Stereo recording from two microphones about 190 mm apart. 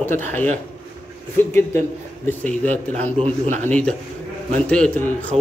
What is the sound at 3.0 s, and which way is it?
Speech, 30° right (ahead or behind).